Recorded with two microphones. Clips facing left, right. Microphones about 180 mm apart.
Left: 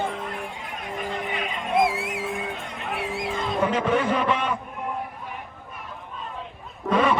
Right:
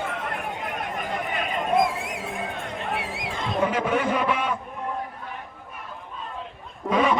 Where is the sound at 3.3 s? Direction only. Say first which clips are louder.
Even; centre (ahead or behind).